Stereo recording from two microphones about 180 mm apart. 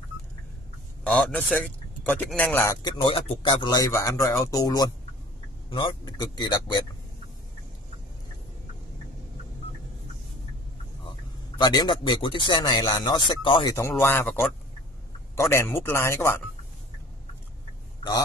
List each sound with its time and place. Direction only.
1.0 s speech: 5° left (ahead or behind); by 6.8 s 25° left (ahead or behind)
11.1 s a man's voice: 25° left (ahead or behind)
13.7 s speech: 15° left (ahead or behind)